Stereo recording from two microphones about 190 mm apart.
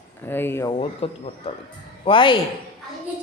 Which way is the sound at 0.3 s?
10° left (ahead or behind).